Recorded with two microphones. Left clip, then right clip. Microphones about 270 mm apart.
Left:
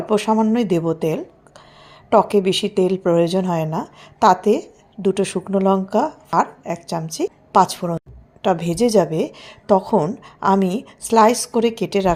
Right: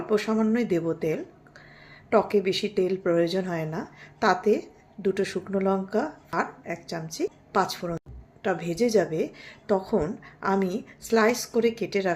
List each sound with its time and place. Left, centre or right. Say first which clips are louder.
0.1 s a woman's voice: left 7 dB; left